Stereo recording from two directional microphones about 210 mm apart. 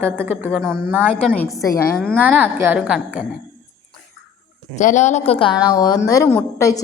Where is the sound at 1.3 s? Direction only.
10° left (ahead or behind).